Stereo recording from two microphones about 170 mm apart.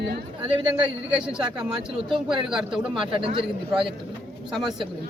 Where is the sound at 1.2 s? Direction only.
5° right (ahead or behind).